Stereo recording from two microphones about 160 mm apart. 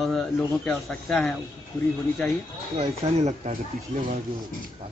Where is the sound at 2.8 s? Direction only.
45° right (ahead or behind).